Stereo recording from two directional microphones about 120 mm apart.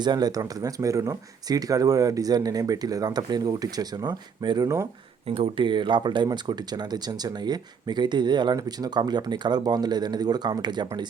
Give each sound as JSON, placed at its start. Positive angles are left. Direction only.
{"t": 0.0, "sound": "speech", "side_deg": -35}
{"t": 5.3, "sound": "speech", "side_deg": -50}